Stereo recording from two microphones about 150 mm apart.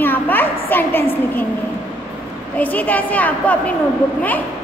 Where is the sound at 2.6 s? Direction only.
10° left (ahead or behind).